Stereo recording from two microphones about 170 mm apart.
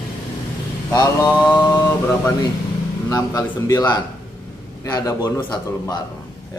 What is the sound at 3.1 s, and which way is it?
A man's voice, 20° left (ahead or behind).